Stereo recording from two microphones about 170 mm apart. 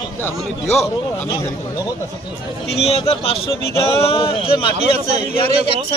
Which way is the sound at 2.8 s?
35° left (ahead or behind).